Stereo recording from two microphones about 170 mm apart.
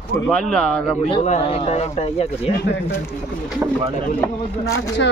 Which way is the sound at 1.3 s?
40° left (ahead or behind).